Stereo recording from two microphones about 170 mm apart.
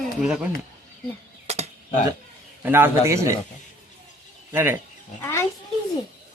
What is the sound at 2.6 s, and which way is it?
Speech, 10° right (ahead or behind).